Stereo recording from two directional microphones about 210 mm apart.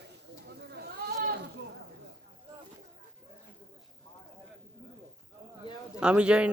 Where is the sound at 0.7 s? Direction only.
50° right (ahead or behind).